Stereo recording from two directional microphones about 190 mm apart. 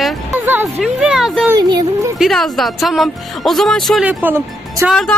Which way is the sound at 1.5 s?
20° right (ahead or behind).